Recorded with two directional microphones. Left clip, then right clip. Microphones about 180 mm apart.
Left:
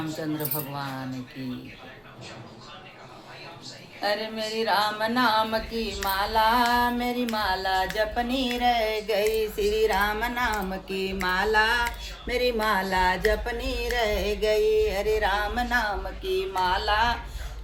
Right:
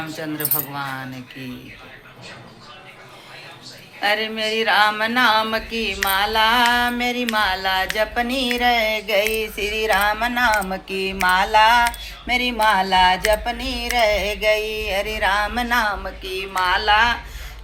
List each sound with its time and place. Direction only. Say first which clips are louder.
0.5 s music: right 6 dB; 30° right (ahead or behind)
4.0 s a sound: right 7 dB; 10° right (ahead or behind)
12.4 s music: right 6 dB; 30° right (ahead or behind); by 17.2 s 15° right (ahead or behind)